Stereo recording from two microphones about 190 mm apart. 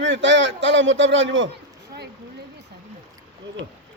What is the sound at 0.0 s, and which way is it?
Speech, 70° right (ahead or behind).